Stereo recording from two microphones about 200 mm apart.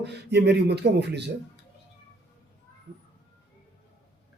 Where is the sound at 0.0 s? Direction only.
55° right (ahead or behind).